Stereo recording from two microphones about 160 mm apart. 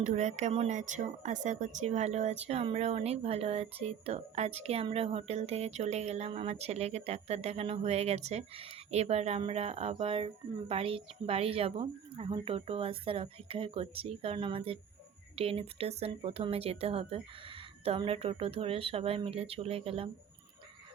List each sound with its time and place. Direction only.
0.0 s speech: 50° right (ahead or behind)